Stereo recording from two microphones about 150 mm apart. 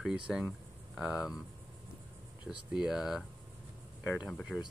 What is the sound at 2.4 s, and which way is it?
Speech, 5° right (ahead or behind).